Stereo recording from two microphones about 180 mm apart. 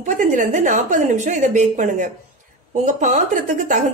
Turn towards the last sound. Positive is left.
turn(degrees=-45)  # may be behind; listen again after turning